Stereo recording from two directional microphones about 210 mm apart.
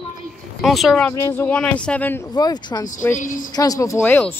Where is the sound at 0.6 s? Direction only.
Centre (ahead or behind).